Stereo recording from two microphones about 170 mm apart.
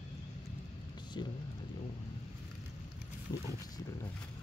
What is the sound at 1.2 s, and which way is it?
Vehicle, 25° left (ahead or behind).